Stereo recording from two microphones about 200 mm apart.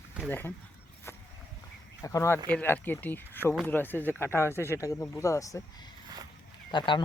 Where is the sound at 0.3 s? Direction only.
10° left (ahead or behind).